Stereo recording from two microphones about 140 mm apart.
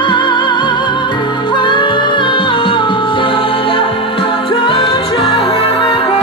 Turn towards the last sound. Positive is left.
turn(degrees=30)  # may be behind; listen again after turning